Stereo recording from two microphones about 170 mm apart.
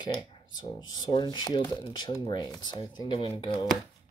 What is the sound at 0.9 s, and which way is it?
Speech, 25° left (ahead or behind).